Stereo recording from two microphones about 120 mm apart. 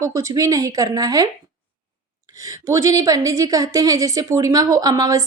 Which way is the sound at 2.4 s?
25° right (ahead or behind).